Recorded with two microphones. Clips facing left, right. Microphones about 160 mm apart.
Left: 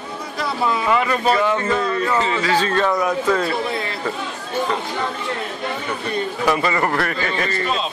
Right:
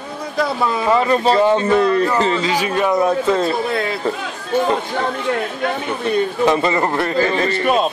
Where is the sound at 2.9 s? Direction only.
25° right (ahead or behind).